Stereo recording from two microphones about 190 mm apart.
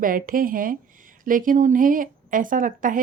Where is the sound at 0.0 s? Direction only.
45° right (ahead or behind).